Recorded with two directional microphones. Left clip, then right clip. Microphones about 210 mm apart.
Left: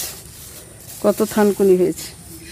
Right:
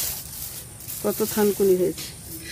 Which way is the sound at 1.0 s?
50° left (ahead or behind).